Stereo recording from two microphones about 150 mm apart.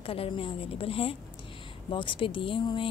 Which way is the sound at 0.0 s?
40° left (ahead or behind).